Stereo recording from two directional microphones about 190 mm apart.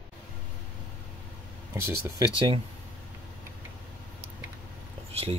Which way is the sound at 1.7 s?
20° right (ahead or behind).